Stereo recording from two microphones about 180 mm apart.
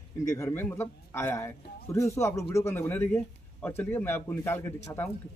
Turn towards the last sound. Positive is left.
turn(degrees=10)  # may be behind; listen again after turning